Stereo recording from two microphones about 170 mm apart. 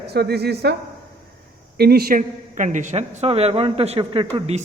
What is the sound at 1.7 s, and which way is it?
A man's voice, 70° right (ahead or behind).